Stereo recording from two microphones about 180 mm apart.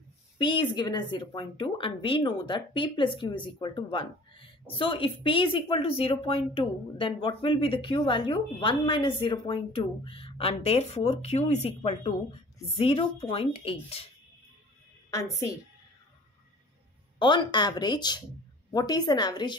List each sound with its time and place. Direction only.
0.4 s speech: 25° left (ahead or behind)
17.2 s speech: 25° left (ahead or behind)